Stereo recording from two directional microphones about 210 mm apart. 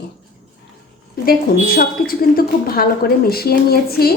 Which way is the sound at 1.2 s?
45° left (ahead or behind).